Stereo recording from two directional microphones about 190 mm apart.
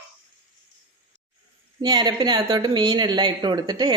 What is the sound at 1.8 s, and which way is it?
Speech, 20° right (ahead or behind).